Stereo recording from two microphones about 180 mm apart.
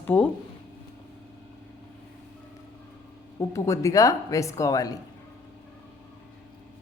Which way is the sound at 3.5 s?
15° left (ahead or behind).